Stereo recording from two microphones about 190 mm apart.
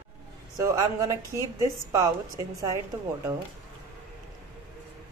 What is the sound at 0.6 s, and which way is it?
Speech, 15° right (ahead or behind).